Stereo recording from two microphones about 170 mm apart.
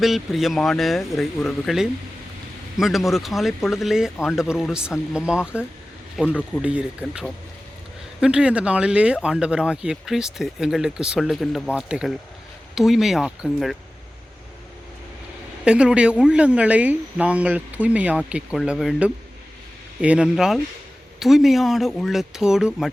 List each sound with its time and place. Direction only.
0.0 s speech: centre (ahead or behind)
15.6 s speech: 5° right (ahead or behind)